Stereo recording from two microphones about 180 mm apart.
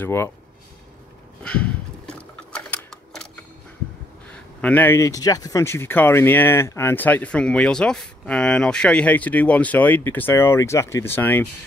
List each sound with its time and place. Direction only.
0.0 s speech: 15° left (ahead or behind)
1.4 s sewing machine: 5° left (ahead or behind)
4.3 s speech: 10° left (ahead or behind)